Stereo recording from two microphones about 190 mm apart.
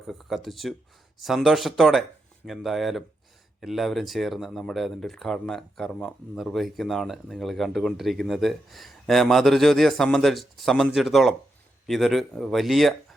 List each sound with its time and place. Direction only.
0.1 s speech: centre (ahead or behind)